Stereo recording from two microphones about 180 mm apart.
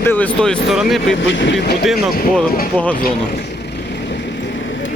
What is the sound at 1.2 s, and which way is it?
Speech, 85° left.